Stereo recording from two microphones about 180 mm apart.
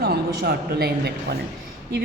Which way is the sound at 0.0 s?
60° right (ahead or behind).